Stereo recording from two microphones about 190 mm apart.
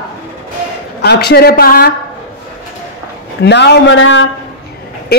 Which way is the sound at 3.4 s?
65° left (ahead or behind).